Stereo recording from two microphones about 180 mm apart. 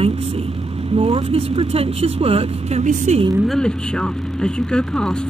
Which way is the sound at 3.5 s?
5° left (ahead or behind).